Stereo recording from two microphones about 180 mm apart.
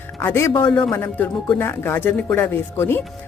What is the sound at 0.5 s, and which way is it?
Speech, 30° left (ahead or behind).